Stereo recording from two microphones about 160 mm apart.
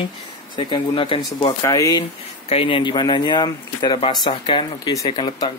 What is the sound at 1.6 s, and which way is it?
Speech, 20° left (ahead or behind).